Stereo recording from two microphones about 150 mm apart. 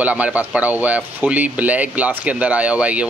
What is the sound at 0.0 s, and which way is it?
Speech, 10° right (ahead or behind).